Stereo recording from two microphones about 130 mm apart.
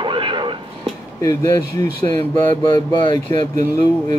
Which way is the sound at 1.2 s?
25° left (ahead or behind).